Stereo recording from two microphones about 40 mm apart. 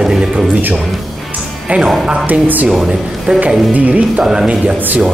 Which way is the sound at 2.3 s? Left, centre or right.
Right.